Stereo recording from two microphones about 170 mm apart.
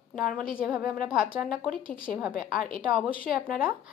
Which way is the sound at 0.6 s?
5° right (ahead or behind).